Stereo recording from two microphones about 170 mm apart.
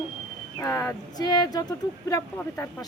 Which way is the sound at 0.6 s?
15° left (ahead or behind).